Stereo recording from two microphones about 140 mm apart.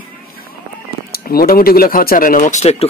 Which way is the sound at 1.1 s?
90° left.